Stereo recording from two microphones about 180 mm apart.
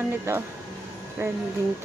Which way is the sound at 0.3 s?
15° right (ahead or behind).